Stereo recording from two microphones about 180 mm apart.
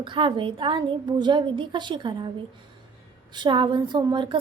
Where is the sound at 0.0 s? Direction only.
25° right (ahead or behind).